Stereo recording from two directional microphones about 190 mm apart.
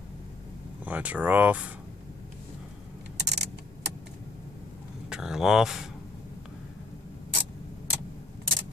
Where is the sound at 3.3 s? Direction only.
65° right (ahead or behind).